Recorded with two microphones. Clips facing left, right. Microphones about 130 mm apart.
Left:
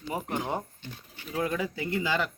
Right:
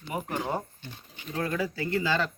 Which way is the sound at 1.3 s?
15° left (ahead or behind).